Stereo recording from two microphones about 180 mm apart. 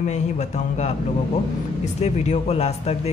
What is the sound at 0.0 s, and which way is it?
Speech, 40° left (ahead or behind).